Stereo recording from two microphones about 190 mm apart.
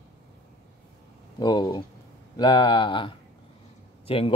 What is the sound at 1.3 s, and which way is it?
A man's voice, 20° left (ahead or behind).